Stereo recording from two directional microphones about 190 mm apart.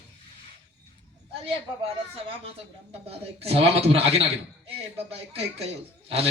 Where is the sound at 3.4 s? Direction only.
30° right (ahead or behind).